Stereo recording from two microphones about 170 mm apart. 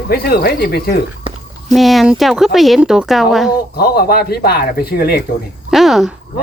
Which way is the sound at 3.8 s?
65° left (ahead or behind).